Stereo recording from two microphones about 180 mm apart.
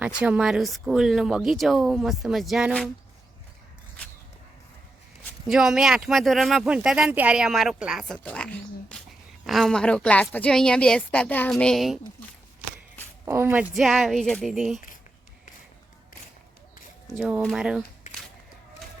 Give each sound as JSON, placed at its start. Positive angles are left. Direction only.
{"t": 0.2, "sound": "speech", "side_deg": -5}
{"t": 5.5, "sound": "speech", "side_deg": -5}
{"t": 13.2, "sound": "speech", "side_deg": -15}
{"t": 13.7, "sound": "speech", "side_deg": 0}
{"t": 17.1, "sound": "speech", "side_deg": -5}
{"t": 18.0, "sound": "a sound", "side_deg": 45}